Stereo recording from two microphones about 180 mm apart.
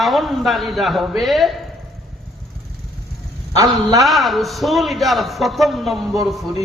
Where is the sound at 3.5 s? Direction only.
20° right (ahead or behind).